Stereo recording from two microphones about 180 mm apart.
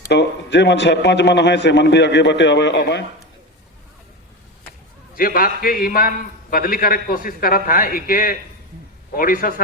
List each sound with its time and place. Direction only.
0.1 s a man's voice: 70° left (ahead or behind)
5.1 s a man's voice: 55° left (ahead or behind)